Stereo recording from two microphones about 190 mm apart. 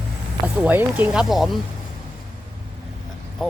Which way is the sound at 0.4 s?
10° right (ahead or behind).